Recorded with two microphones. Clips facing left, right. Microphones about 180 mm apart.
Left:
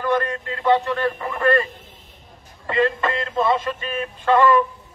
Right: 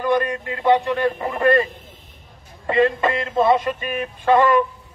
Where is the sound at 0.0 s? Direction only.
15° right (ahead or behind).